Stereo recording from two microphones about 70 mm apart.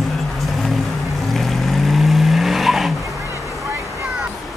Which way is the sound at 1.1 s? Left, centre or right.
Centre.